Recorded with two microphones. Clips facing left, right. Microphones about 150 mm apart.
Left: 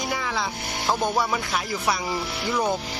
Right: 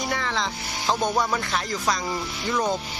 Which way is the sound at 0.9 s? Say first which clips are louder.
Even; 5° left (ahead or behind).